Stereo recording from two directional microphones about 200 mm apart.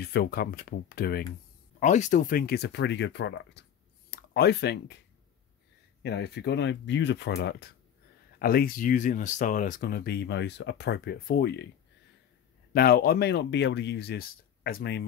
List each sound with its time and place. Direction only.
0.0 s speech: 50° left (ahead or behind)
1.8 s speech: 40° left (ahead or behind); by 4.9 s 55° left (ahead or behind)
6.0 s speech: 55° left (ahead or behind)
12.7 s speech: 50° left (ahead or behind)